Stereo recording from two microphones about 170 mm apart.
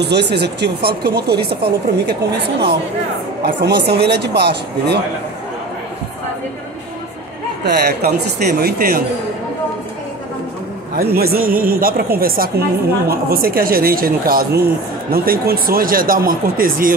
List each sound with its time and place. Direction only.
0.0 s speech: 80° right
3.4 s speech: 80° right
7.6 s speech: 70° right (ahead or behind)
11.0 s speech: 65° right (ahead or behind)